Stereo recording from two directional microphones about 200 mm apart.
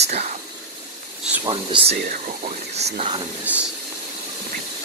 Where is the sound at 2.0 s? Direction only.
40° right (ahead or behind).